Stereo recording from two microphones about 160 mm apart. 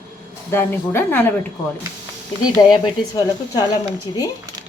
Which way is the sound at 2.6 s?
25° left (ahead or behind).